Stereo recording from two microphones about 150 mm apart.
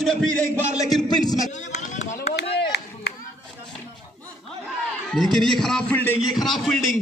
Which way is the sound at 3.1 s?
90° left.